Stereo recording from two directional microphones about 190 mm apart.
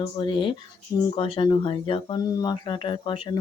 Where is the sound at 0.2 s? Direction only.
25° left (ahead or behind).